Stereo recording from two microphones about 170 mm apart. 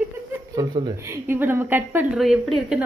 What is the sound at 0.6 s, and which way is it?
Speech, 20° right (ahead or behind).